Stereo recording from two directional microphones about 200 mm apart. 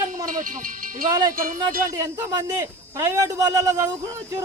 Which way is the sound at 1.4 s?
45° right (ahead or behind).